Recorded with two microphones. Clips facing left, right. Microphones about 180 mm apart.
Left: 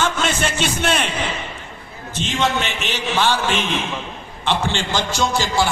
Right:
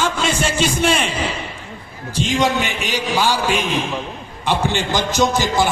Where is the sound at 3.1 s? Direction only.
10° right (ahead or behind).